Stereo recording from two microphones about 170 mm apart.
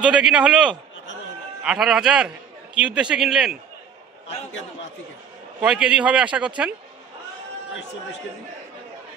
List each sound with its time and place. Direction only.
0.0 s a man's voice: 5° right (ahead or behind)
5.6 s speech: 5° right (ahead or behind)